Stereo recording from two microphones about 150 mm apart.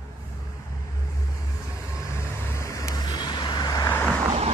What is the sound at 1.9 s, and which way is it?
Vehicle, 20° left (ahead or behind).